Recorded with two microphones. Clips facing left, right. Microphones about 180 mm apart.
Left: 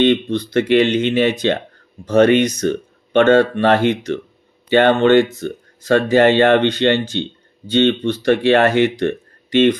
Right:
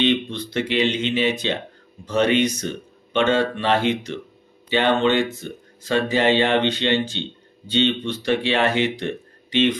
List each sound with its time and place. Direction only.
0.0 s speech: 50° left (ahead or behind)